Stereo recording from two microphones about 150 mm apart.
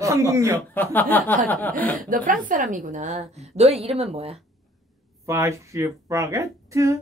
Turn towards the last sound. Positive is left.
turn(degrees=-20)  # may be behind; listen again after turning